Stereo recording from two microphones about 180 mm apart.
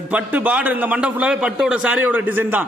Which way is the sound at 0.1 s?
10° right (ahead or behind).